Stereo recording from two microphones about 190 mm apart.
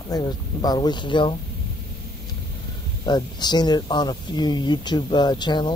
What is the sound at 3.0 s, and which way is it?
Speech, 20° left (ahead or behind).